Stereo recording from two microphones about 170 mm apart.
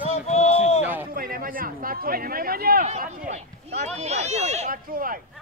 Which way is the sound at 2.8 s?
45° right (ahead or behind).